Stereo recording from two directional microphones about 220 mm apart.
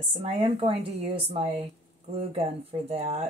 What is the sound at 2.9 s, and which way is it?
Speech, 30° right (ahead or behind).